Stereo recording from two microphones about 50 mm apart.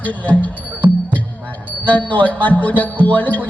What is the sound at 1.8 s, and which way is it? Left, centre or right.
Speech, left.